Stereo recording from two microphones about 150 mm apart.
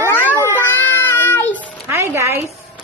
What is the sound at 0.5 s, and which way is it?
Child singing, 15° left (ahead or behind).